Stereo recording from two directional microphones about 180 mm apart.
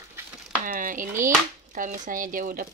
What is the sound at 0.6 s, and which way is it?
Speech, 50° right (ahead or behind).